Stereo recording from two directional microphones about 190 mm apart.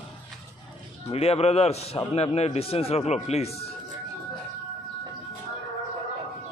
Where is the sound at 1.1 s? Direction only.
30° left (ahead or behind).